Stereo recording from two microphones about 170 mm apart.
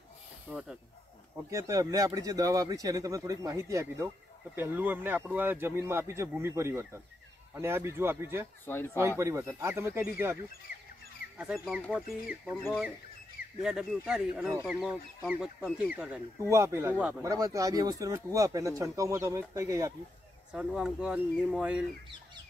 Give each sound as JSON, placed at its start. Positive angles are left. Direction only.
{"t": 0.5, "sound": "speech", "side_deg": -5}
{"t": 1.3, "sound": "speech", "side_deg": -20}
{"t": 8.6, "sound": "speech", "side_deg": 15}
{"t": 8.9, "sound": "speech", "side_deg": -15}
{"t": 11.3, "sound": "speech", "side_deg": -5}
{"t": 16.3, "sound": "speech", "side_deg": -15}
{"t": 20.5, "sound": "speech", "side_deg": -5}